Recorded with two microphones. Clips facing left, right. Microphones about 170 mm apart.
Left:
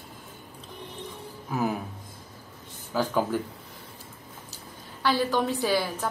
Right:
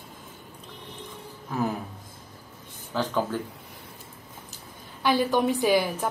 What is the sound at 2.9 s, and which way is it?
Speech, 10° left (ahead or behind).